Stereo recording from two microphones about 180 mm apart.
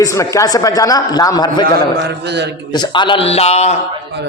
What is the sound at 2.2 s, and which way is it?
Speech, 70° right (ahead or behind).